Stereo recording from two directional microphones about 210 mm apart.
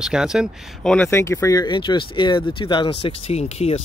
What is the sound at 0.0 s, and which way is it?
Speech, 5° right (ahead or behind).